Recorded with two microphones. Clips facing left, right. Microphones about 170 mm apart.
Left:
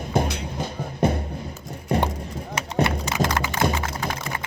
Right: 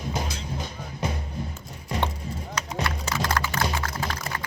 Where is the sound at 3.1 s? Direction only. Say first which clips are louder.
Left 3 dB; 20° left (ahead or behind).